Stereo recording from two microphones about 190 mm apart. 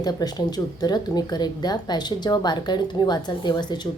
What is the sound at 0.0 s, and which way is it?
Speech, 20° left (ahead or behind).